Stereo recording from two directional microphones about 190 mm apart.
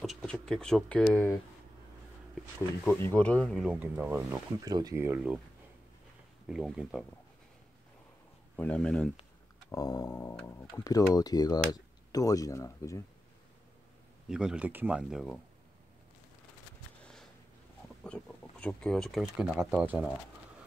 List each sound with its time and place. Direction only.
0.0 s speech: centre (ahead or behind)
2.8 s speech: 10° left (ahead or behind); by 5.4 s 10° right (ahead or behind)
6.4 s speech: 5° right (ahead or behind)
8.5 s speech: 5° left (ahead or behind)
9.7 s speech: 15° left (ahead or behind)
14.3 s speech: 5° right (ahead or behind)
17.0 s a sound: centre (ahead or behind)
18.0 s speech: 5° left (ahead or behind)